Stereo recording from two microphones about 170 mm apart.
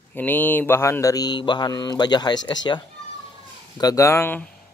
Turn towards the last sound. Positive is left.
turn(degrees=15)  # may be behind; listen again after turning